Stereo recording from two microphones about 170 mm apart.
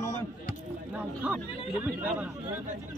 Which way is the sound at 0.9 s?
10° right (ahead or behind).